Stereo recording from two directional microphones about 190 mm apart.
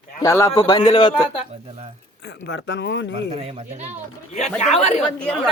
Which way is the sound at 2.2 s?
65° left (ahead or behind).